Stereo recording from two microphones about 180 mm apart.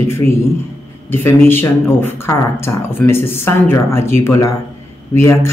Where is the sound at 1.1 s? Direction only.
10° left (ahead or behind).